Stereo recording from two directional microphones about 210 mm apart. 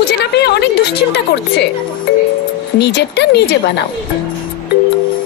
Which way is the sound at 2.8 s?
55° left (ahead or behind).